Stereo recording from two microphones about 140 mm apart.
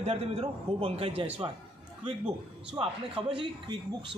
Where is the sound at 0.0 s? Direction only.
45° right (ahead or behind).